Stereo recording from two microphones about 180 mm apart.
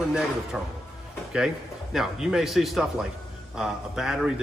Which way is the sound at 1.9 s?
Centre (ahead or behind).